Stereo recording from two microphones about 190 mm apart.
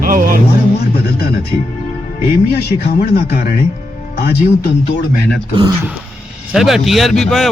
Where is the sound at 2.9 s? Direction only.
55° left (ahead or behind).